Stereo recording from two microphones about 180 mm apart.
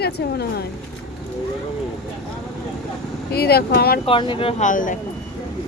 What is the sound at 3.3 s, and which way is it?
Speech, 60° left (ahead or behind).